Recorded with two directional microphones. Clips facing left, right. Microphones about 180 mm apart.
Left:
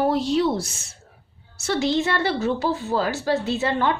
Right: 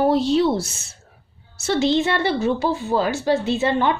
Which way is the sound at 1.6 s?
25° right (ahead or behind).